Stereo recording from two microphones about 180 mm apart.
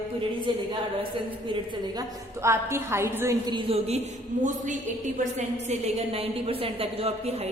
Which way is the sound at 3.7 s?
35° right (ahead or behind).